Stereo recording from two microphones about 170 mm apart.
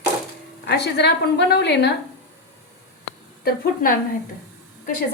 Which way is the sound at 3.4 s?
60° left (ahead or behind).